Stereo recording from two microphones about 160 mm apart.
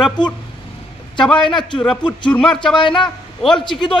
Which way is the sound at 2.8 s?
30° left (ahead or behind).